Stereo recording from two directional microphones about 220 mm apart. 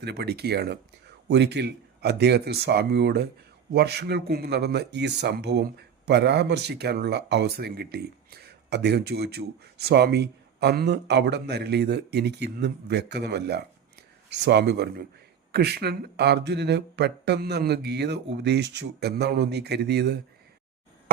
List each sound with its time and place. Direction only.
0.0 s speech: 50° right (ahead or behind)